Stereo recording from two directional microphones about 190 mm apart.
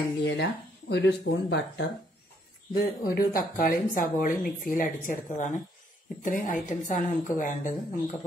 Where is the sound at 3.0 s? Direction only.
50° left (ahead or behind).